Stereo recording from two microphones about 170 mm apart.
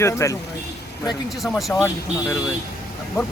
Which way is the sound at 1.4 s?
Centre (ahead or behind).